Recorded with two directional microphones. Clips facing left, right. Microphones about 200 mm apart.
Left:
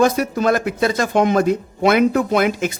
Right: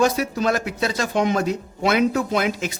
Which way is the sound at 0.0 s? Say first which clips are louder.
Left 4 dB; 50° left (ahead or behind).